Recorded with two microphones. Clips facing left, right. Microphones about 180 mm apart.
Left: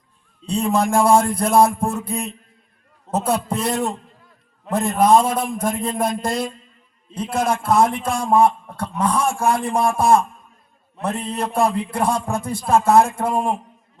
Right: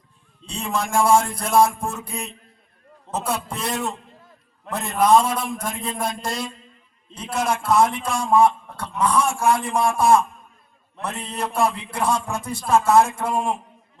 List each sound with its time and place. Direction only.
0.4 s a man's voice: 55° left (ahead or behind)